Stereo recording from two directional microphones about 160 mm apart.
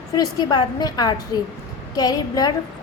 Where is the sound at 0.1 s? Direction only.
25° left (ahead or behind).